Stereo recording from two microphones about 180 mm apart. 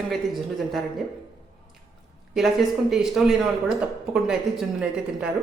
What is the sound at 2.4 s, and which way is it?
Speech, centre (ahead or behind).